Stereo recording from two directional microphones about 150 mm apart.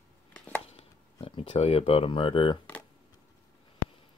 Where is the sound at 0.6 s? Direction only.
40° left (ahead or behind).